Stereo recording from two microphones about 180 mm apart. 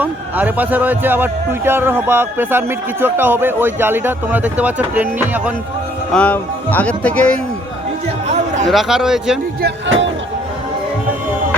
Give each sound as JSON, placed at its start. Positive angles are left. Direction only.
{"t": 0.0, "sound": "speech", "side_deg": -10}
{"t": 6.1, "sound": "speech", "side_deg": 10}
{"t": 8.6, "sound": "speech", "side_deg": 0}
{"t": 9.6, "sound": "speech", "side_deg": -80}